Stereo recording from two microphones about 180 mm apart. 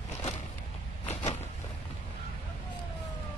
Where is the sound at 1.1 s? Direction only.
40° left (ahead or behind).